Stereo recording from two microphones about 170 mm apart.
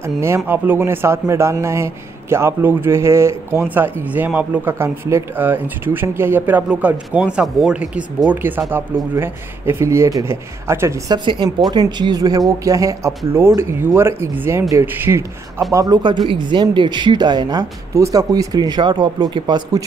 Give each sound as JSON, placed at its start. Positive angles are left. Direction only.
{"t": 0.0, "sound": "a man's voice", "side_deg": -15}